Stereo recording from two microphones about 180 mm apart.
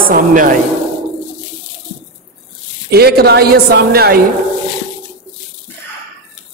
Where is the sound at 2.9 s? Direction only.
60° right (ahead or behind).